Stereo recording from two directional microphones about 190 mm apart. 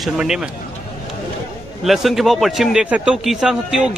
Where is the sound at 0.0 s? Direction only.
5° right (ahead or behind).